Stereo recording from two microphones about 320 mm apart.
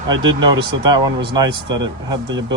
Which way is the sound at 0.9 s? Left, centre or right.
Centre.